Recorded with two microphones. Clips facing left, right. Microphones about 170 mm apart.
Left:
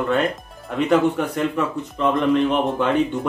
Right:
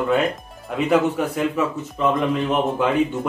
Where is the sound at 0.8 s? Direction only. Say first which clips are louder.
Left 1 dB; 5° right (ahead or behind).